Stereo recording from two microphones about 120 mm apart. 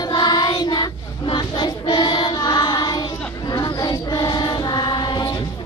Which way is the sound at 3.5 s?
35° left (ahead or behind).